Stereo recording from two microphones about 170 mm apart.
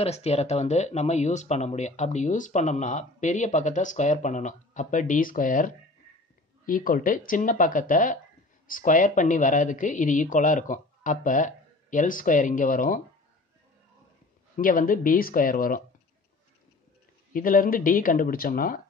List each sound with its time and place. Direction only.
0.0 s speech: 40° left (ahead or behind)
14.6 s speech: 55° left (ahead or behind)
17.3 s speech: 55° left (ahead or behind)